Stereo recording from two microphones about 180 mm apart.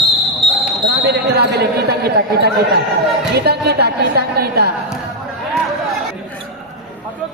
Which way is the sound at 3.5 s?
65° right (ahead or behind).